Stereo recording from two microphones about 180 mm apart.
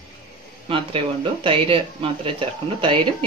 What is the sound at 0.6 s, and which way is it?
Speech, 30° right (ahead or behind).